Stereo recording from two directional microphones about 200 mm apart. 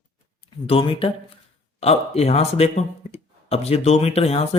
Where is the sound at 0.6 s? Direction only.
25° left (ahead or behind).